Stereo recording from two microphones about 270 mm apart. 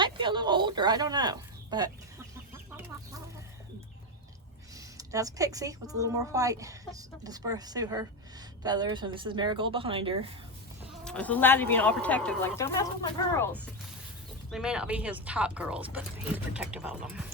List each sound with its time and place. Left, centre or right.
0.0 s speech: centre
4.9 s speech: centre
11.0 s speech: centre